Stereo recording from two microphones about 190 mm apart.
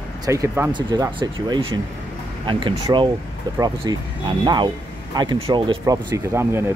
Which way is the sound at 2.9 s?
15° right (ahead or behind).